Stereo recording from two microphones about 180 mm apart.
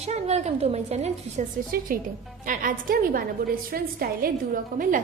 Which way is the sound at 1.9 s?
50° right (ahead or behind).